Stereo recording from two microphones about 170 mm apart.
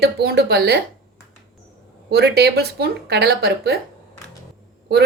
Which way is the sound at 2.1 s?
75° right (ahead or behind).